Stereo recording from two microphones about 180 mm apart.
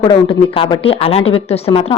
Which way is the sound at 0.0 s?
30° left (ahead or behind).